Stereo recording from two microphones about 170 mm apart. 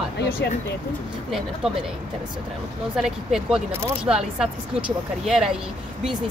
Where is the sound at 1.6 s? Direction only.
5° right (ahead or behind).